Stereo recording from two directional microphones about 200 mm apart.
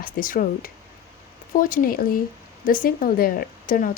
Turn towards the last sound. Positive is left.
turn(degrees=45)  # may be behind; listen again after turning